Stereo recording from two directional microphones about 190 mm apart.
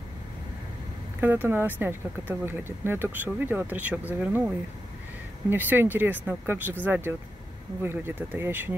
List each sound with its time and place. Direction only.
1.2 s speech: 10° right (ahead or behind)
5.5 s speech: 10° right (ahead or behind)